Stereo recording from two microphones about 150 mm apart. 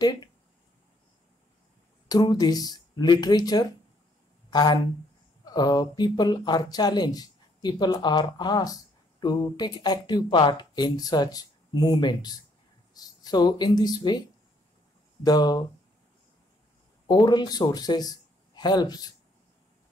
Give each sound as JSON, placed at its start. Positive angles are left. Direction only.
{"t": 0.0, "sound": "speech", "side_deg": 30}
{"t": 2.0, "sound": "speech", "side_deg": 25}
{"t": 15.2, "sound": "speech", "side_deg": 30}
{"t": 17.1, "sound": "speech", "side_deg": 25}